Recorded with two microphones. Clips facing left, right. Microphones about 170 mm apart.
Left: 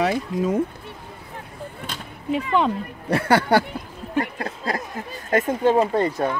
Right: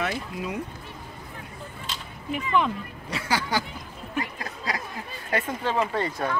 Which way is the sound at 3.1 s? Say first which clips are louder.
Left 10 dB; 60° left (ahead or behind).